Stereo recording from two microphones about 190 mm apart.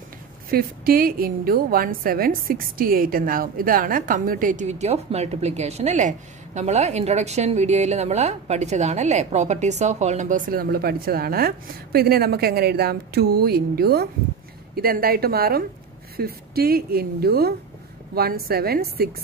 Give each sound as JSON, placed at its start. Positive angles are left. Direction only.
{"t": 0.5, "sound": "a woman's voice", "side_deg": -50}